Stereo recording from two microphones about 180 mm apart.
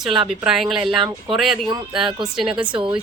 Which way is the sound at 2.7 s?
30° right (ahead or behind).